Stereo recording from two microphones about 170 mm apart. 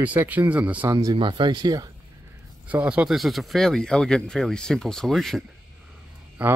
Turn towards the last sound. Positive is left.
turn(degrees=-10)  # may be behind; listen again after turning